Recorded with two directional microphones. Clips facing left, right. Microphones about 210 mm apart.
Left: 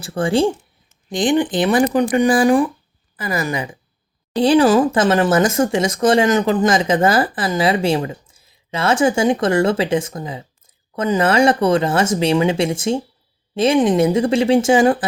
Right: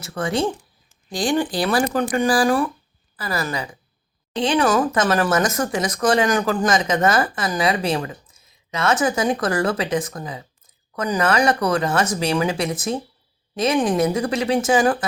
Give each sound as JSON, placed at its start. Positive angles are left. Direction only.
{"t": 0.0, "sound": "speech", "side_deg": 30}
{"t": 4.4, "sound": "speech", "side_deg": 35}